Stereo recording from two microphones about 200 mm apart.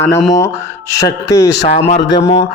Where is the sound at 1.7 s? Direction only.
30° left (ahead or behind).